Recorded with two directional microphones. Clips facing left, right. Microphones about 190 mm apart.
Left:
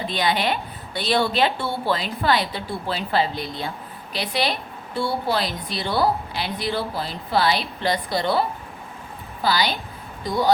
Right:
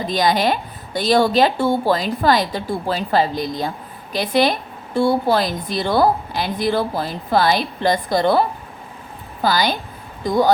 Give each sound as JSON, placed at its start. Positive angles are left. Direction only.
{"t": 0.0, "sound": "a woman's voice", "side_deg": -40}